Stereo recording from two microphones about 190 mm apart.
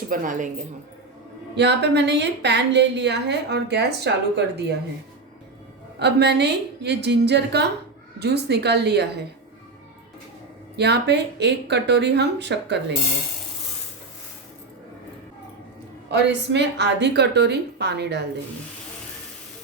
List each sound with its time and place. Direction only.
0.1 s speech: 45° right (ahead or behind)
1.5 s a woman's voice: 65° right (ahead or behind)
6.0 s a woman's voice: 65° right (ahead or behind)
10.8 s a woman's voice: 60° right (ahead or behind)
16.1 s a woman's voice: 65° right (ahead or behind)